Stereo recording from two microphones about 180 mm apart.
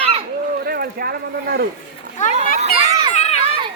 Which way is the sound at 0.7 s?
55° right (ahead or behind).